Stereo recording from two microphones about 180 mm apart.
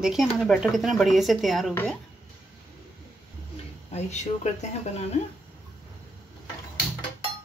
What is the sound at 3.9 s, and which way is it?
Speech, 40° left (ahead or behind).